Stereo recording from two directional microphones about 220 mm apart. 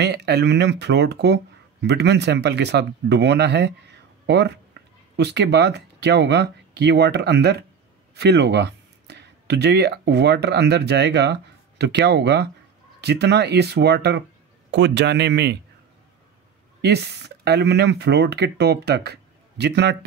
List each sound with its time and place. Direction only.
0.0 s speech: 50° right (ahead or behind)
16.8 s speech: 50° right (ahead or behind)